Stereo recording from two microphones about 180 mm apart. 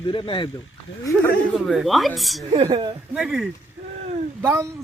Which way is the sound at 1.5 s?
Centre (ahead or behind).